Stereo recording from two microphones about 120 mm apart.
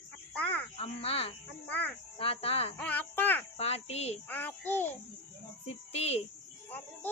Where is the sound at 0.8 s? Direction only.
55° left (ahead or behind).